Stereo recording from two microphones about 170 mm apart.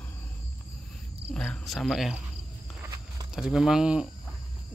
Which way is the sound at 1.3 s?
5° left (ahead or behind).